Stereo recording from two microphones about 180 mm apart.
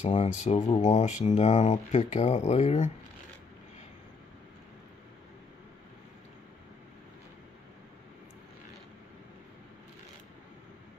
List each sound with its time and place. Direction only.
0.0 s speech: 40° left (ahead or behind)